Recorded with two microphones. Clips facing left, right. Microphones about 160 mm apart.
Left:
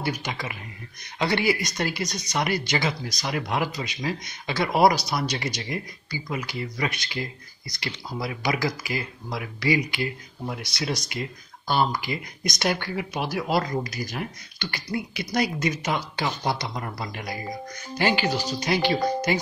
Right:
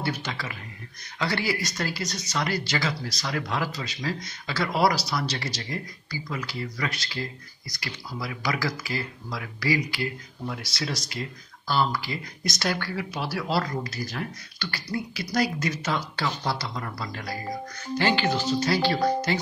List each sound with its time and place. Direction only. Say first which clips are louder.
0.0 s speech: left 1 dB; 15° left (ahead or behind)